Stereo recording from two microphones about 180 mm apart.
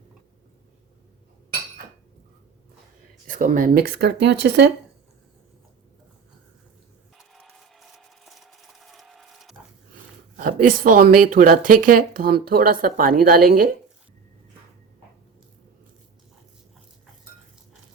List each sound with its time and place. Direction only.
3.2 s speech: 45° right (ahead or behind); by 4.7 s 70° right (ahead or behind)
7.2 s a sound: centre (ahead or behind)
10.3 s speech: 50° right (ahead or behind)